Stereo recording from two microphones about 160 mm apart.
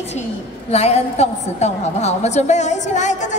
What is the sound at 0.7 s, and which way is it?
A woman's voice, 40° left (ahead or behind).